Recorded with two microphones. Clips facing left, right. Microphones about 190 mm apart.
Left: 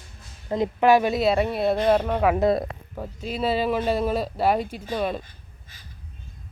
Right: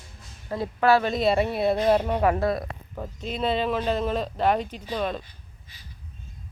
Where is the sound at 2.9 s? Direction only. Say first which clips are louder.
Left 1 dB; 5° left (ahead or behind).